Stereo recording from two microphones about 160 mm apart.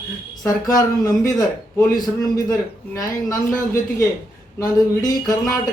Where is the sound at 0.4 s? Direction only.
20° left (ahead or behind).